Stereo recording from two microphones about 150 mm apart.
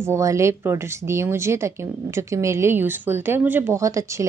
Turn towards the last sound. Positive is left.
turn(degrees=-20)  # may be behind; listen again after turning